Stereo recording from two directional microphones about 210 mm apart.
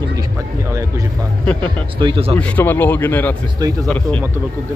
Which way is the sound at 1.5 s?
5° left (ahead or behind).